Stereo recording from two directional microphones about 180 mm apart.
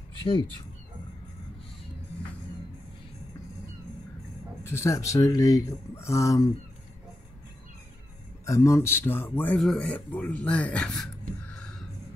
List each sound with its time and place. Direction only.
0.2 s speech: 25° left (ahead or behind)
4.6 s speech: 15° left (ahead or behind)
8.5 s speech: 15° left (ahead or behind)